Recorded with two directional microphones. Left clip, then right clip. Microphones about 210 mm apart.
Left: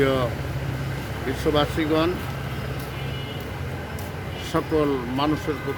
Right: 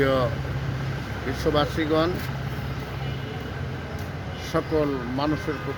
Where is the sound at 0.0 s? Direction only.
5° right (ahead or behind).